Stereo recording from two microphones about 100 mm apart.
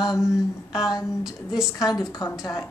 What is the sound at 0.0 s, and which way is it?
Speech, 35° left (ahead or behind).